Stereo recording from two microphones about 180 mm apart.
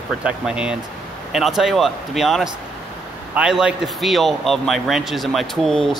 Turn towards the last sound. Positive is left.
turn(degrees=0)  # may be behind; listen again after turning